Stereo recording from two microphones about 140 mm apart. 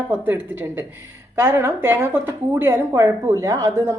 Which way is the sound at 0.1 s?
15° right (ahead or behind).